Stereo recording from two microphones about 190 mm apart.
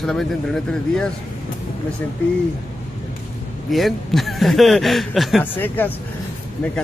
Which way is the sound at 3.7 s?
Centre (ahead or behind).